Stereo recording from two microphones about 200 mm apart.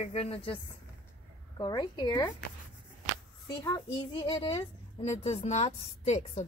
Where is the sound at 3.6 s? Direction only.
20° left (ahead or behind).